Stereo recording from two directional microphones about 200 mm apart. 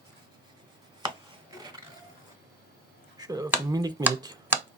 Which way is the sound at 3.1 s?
20° right (ahead or behind).